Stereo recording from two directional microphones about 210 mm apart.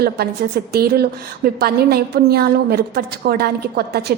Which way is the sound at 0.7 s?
50° right (ahead or behind).